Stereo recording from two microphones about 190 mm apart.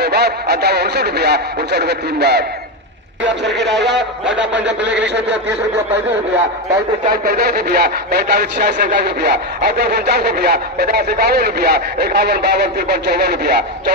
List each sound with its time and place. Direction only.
0.0 s speech: 55° right (ahead or behind)
3.4 s a man's voice: 65° right (ahead or behind)
7.1 s speech: 55° right (ahead or behind)